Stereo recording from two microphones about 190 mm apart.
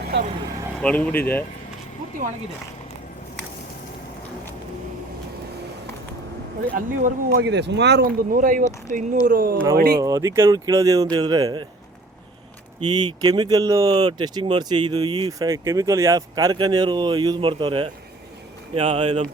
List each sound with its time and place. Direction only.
0.8 s speech: 5° left (ahead or behind)
6.7 s speech: 50° right (ahead or behind)
10.0 s speech: 15° right (ahead or behind)
12.8 s speech: 20° right (ahead or behind)